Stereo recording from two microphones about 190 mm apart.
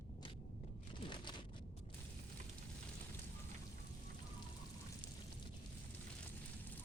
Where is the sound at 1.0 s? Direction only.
25° left (ahead or behind).